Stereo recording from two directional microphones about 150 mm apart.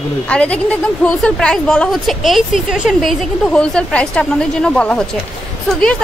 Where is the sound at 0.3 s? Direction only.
10° left (ahead or behind).